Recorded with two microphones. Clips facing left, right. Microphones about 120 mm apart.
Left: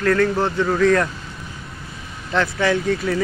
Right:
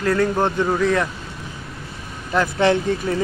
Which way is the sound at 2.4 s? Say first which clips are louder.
Right 3 dB; 20° right (ahead or behind).